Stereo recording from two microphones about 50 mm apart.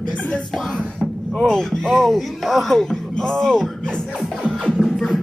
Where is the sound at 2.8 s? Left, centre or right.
Centre.